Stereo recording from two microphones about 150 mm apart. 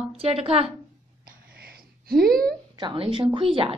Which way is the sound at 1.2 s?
85° right.